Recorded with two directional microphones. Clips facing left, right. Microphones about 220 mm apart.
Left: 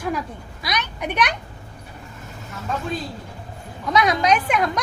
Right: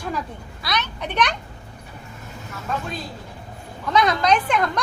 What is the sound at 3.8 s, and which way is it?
Speech, 10° left (ahead or behind).